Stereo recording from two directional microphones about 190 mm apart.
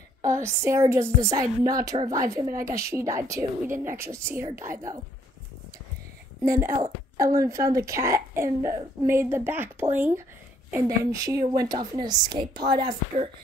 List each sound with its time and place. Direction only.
0.2 s a woman's voice: 15° right (ahead or behind)
6.5 s a woman's voice: 45° right (ahead or behind)
7.3 s a woman's voice: 15° right (ahead or behind)